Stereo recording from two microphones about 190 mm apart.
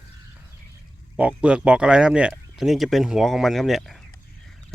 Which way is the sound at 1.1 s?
5° right (ahead or behind).